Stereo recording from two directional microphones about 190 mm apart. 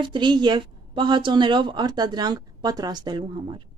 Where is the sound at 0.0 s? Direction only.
25° right (ahead or behind).